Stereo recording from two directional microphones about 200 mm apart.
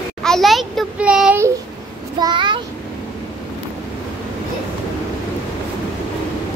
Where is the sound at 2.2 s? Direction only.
20° right (ahead or behind).